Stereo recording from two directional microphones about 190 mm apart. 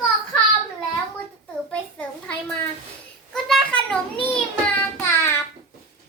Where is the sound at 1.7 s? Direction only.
5° left (ahead or behind).